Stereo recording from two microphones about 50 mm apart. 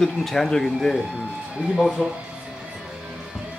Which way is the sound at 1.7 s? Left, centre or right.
Centre.